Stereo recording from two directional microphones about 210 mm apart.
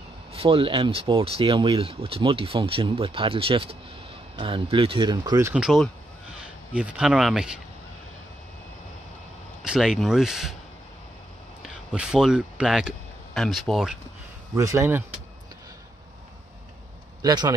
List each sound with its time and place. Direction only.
0.3 s speech: 25° right (ahead or behind)
5.5 s speech: centre (ahead or behind)
9.6 s speech: centre (ahead or behind)
11.6 s speech: 5° right (ahead or behind)
14.5 s speech: 15° right (ahead or behind)
17.2 s speech: 20° right (ahead or behind)